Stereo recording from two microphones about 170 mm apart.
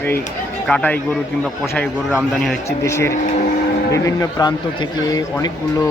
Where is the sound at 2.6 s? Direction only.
15° left (ahead or behind).